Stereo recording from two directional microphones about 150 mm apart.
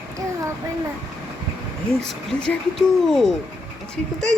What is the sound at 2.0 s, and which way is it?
Speech, 5° left (ahead or behind).